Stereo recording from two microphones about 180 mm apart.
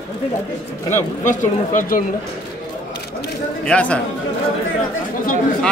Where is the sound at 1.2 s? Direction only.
45° left (ahead or behind).